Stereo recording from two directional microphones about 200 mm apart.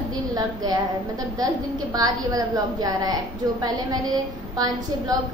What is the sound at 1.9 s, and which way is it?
A woman's voice, 20° right (ahead or behind).